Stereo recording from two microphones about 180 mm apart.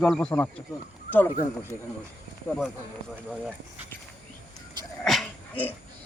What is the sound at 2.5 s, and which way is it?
Speech, centre (ahead or behind).